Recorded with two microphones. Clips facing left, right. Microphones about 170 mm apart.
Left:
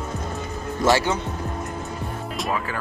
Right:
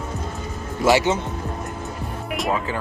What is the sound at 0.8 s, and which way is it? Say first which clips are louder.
Speech: right 2 dB; 20° right (ahead or behind).